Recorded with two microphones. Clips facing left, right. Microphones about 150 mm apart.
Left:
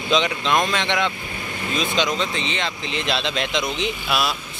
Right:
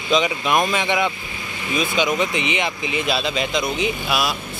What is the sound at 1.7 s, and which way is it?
Speech, 5° right (ahead or behind).